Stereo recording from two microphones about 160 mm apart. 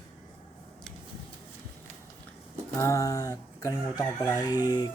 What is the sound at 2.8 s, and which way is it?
Speech, 20° left (ahead or behind).